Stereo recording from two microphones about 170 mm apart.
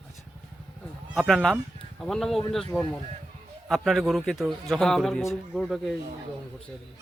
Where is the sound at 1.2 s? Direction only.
Centre (ahead or behind).